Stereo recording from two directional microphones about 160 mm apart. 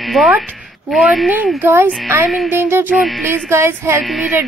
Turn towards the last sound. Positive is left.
turn(degrees=0)  # may be behind; listen again after turning